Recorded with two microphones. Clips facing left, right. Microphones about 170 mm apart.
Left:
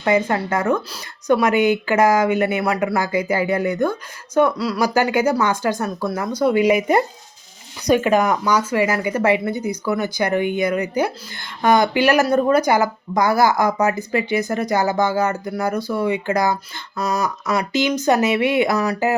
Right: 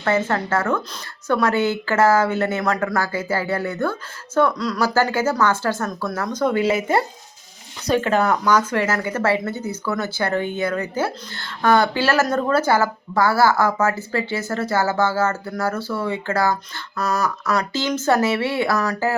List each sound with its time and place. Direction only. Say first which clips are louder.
0.0 s speech: left 2 dB; 15° left (ahead or behind)